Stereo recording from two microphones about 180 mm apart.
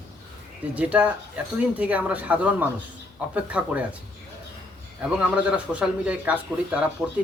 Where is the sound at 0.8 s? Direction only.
5° right (ahead or behind).